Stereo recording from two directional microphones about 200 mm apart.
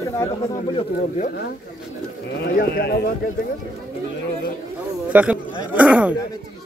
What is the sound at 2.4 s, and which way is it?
Speech, 50° left (ahead or behind).